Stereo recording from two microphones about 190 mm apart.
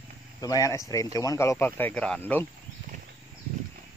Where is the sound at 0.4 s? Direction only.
20° left (ahead or behind).